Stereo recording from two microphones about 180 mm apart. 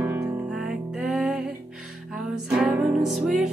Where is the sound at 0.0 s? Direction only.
15° right (ahead or behind).